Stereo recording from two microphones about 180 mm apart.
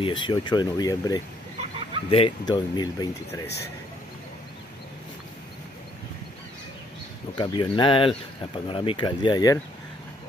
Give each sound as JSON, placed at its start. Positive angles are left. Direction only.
{"t": 0.0, "sound": "speech", "side_deg": 25}
{"t": 7.3, "sound": "speech", "side_deg": 25}